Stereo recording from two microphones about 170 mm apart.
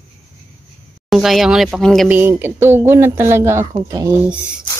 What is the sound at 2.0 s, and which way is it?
Speech, 10° right (ahead or behind).